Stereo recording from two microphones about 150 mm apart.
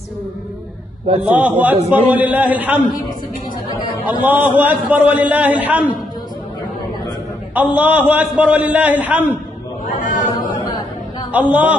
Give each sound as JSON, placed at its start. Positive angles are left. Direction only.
{"t": 1.2, "sound": "a man's voice", "side_deg": -10}
{"t": 4.3, "sound": "a man's voice", "side_deg": -10}
{"t": 7.5, "sound": "a man's voice", "side_deg": -10}
{"t": 9.8, "sound": "a sound", "side_deg": 60}
{"t": 11.3, "sound": "a man's voice", "side_deg": -10}